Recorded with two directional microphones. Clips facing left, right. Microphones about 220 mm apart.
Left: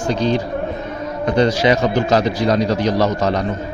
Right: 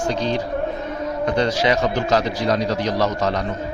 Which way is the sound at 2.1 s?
30° left (ahead or behind).